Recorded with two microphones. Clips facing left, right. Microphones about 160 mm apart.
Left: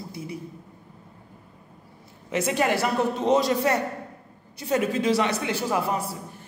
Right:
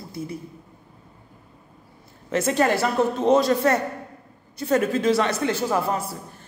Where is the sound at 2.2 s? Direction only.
15° left (ahead or behind).